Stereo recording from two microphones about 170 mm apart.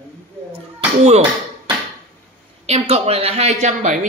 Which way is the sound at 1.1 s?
30° right (ahead or behind).